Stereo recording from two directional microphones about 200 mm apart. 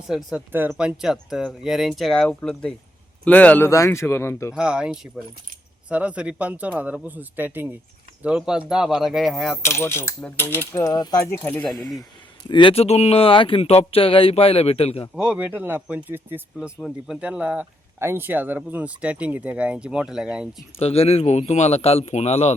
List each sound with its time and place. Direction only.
0.1 s speech: 5° right (ahead or behind); by 4.5 s 10° left (ahead or behind)
4.5 s speech: 5° right (ahead or behind)
9.6 s speech: 15° left (ahead or behind)
12.5 s speech: 25° left (ahead or behind)
15.1 s speech: 5° right (ahead or behind)
20.7 s a man's voice: 30° left (ahead or behind)